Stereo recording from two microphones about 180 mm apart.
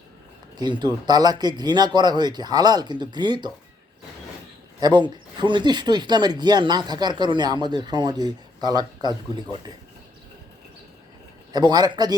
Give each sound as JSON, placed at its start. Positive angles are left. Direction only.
{"t": 0.5, "sound": "speech", "side_deg": -25}
{"t": 4.8, "sound": "speech", "side_deg": -25}
{"t": 11.5, "sound": "speech", "side_deg": -25}